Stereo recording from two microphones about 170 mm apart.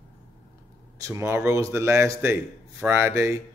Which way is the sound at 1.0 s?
15° right (ahead or behind).